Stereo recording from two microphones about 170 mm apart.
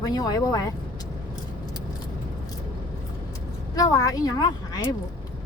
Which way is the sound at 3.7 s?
20° left (ahead or behind).